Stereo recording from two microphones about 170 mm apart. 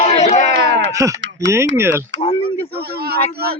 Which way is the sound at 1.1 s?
90° right.